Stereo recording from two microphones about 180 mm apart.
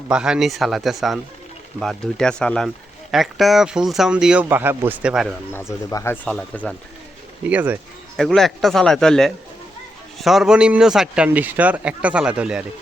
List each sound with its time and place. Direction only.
0.1 s a man's voice: 5° right (ahead or behind)
5.9 s a man's voice: 15° left (ahead or behind)
7.4 s speech: 10° right (ahead or behind)
8.1 s a man's voice: centre (ahead or behind)